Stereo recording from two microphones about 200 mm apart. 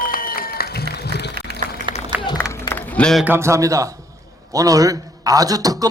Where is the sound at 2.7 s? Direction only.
5° left (ahead or behind).